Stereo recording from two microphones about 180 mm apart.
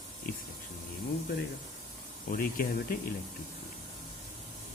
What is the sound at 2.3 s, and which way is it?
Speech, 55° left (ahead or behind).